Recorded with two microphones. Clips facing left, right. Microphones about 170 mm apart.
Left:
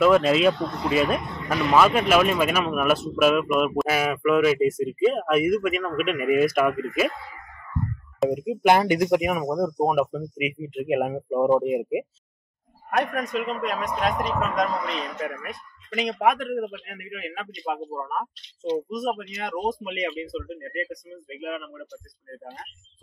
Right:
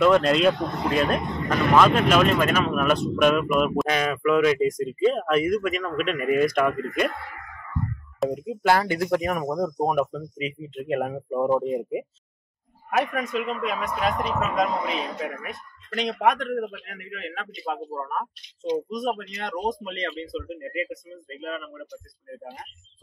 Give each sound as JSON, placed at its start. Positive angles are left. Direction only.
{"t": 0.0, "sound": "speech", "side_deg": 5}
{"t": 7.1, "sound": "speech", "side_deg": -60}
{"t": 8.3, "sound": "speech", "side_deg": 15}
{"t": 9.3, "sound": "speech", "side_deg": 5}
{"t": 12.9, "sound": "speech", "side_deg": 0}
{"t": 18.6, "sound": "speech", "side_deg": -10}
{"t": 18.9, "sound": "speech", "side_deg": 5}
{"t": 21.1, "sound": "speech", "side_deg": 5}
{"t": 21.7, "sound": "speech", "side_deg": -5}